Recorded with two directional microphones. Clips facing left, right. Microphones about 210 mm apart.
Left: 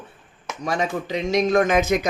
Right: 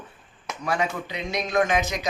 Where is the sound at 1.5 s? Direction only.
50° left (ahead or behind).